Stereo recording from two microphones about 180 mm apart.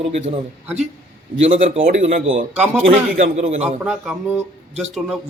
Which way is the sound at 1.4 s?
45° right (ahead or behind).